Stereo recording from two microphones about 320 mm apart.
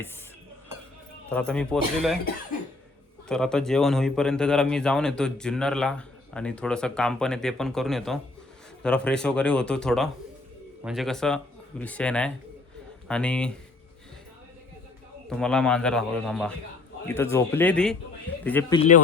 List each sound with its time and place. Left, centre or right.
1.3 s a man's voice: centre
3.2 s a man's voice: centre
15.3 s a man's voice: centre
18.8 s speech: left